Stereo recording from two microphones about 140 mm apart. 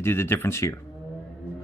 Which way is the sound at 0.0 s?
15° left (ahead or behind).